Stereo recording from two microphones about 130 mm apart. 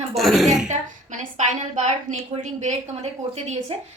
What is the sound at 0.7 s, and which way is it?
A woman's voice, 65° right (ahead or behind).